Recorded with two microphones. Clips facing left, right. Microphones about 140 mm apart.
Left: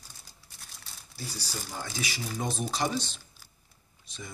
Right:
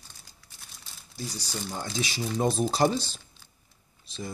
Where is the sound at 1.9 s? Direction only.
25° right (ahead or behind).